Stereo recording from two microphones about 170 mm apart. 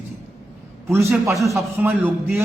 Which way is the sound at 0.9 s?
15° right (ahead or behind).